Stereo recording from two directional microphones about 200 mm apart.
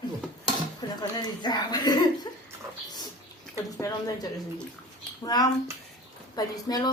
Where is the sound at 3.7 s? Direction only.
15° left (ahead or behind).